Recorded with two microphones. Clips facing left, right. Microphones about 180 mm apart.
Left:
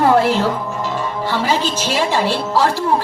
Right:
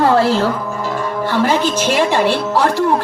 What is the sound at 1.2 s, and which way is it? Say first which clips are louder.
A woman's voice: right 4 dB; 55° right (ahead or behind).